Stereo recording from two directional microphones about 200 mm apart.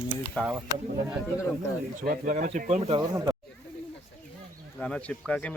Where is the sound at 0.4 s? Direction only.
10° left (ahead or behind).